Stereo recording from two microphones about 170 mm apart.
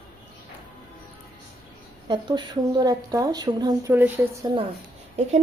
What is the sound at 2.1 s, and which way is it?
A woman's voice, 25° right (ahead or behind).